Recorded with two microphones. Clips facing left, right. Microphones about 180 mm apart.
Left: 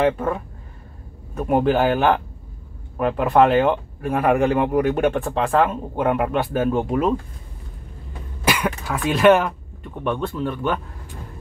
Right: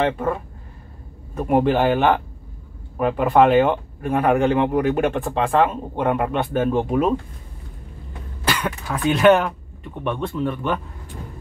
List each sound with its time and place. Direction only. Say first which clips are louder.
0.0 s speech: left 1 dB; centre (ahead or behind)
8.5 s speech: left 2 dB; 5° left (ahead or behind)